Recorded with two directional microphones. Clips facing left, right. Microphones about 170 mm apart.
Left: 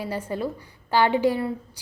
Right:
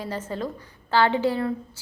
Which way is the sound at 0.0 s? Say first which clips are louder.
Left 2 dB; 10° left (ahead or behind).